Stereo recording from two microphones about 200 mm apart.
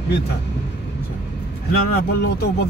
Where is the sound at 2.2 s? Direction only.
55° left (ahead or behind).